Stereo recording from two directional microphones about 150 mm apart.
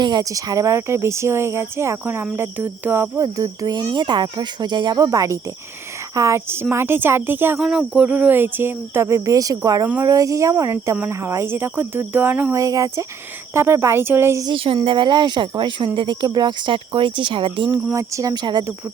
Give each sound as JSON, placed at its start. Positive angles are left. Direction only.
{"t": 0.0, "sound": "speech", "side_deg": -25}
{"t": 14.5, "sound": "speech", "side_deg": -35}
{"t": 17.9, "sound": "speech", "side_deg": -20}